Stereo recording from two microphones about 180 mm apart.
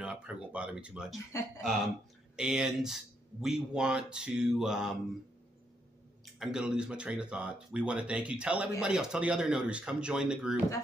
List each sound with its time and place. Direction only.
0.0 s speech: 5° right (ahead or behind)
1.3 s speech: 15° left (ahead or behind)
2.3 s speech: 5° right (ahead or behind)
6.4 s speech: 5° right (ahead or behind)